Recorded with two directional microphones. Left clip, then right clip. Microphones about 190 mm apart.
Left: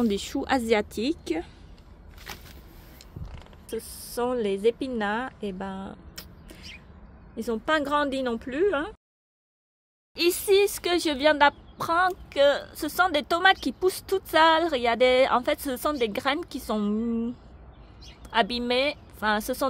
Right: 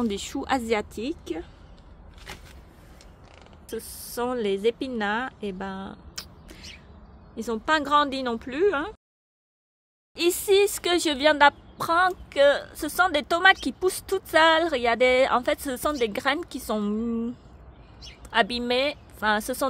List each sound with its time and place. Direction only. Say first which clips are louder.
0.0 s speech: left 2 dB; 5° left (ahead or behind)
3.7 s speech: left 1 dB; centre (ahead or behind)
10.1 s speech: right 1 dB; 5° right (ahead or behind)